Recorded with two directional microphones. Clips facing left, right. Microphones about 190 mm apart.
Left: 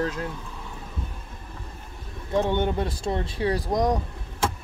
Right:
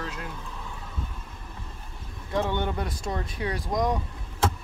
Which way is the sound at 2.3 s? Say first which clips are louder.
Left 4 dB; 20° left (ahead or behind).